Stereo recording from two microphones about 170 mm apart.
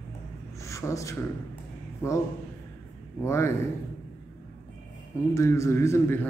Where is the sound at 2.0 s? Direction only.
15° left (ahead or behind).